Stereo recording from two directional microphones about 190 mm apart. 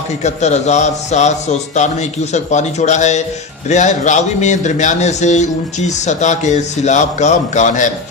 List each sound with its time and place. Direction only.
0.2 s a man's voice: 35° left (ahead or behind)